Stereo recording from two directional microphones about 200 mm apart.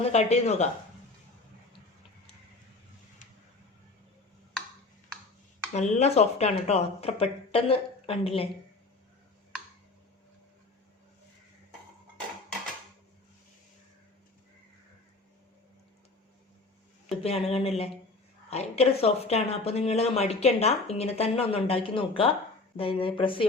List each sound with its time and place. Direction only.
0.1 s speech: 35° left (ahead or behind)
5.7 s speech: 35° left (ahead or behind)
17.2 s speech: 30° left (ahead or behind)